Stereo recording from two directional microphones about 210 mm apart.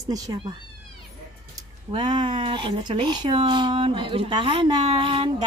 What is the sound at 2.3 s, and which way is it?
Speech, 25° right (ahead or behind).